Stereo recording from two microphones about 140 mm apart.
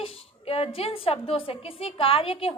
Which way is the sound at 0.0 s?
45° left (ahead or behind).